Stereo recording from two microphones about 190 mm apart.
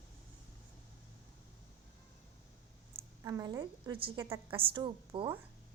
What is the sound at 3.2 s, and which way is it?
A woman's voice, 20° right (ahead or behind).